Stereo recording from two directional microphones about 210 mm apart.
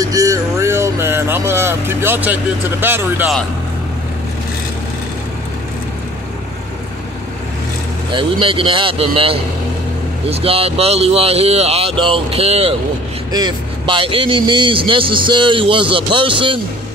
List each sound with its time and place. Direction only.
0.0 s music: 15° right (ahead or behind)
2.8 s speech: 10° right (ahead or behind)
8.1 s a man's voice: 25° right (ahead or behind)